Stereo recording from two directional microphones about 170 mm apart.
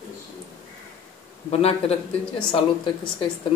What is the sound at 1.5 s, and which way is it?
Speech, 35° left (ahead or behind).